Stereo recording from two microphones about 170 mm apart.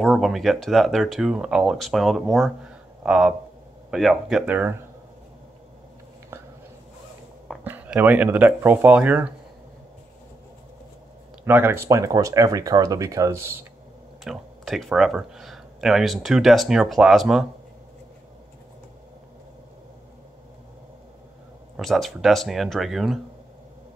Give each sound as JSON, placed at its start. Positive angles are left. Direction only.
{"t": 0.0, "sound": "speech", "side_deg": 0}
{"t": 7.6, "sound": "speech", "side_deg": -10}
{"t": 11.4, "sound": "speech", "side_deg": -10}
{"t": 14.2, "sound": "speech", "side_deg": 0}
{"t": 21.7, "sound": "speech", "side_deg": 0}